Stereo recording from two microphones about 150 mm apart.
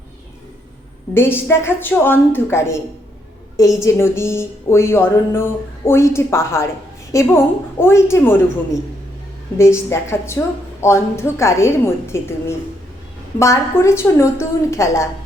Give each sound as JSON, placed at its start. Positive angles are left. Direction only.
{"t": 1.1, "sound": "a woman's voice", "side_deg": 15}